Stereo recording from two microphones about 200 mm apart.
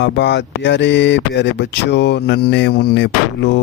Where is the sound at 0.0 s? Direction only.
60° left (ahead or behind).